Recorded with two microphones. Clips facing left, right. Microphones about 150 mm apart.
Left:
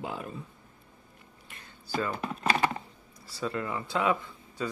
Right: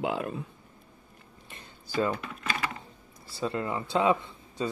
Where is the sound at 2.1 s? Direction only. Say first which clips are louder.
Left 6 dB; 35° left (ahead or behind).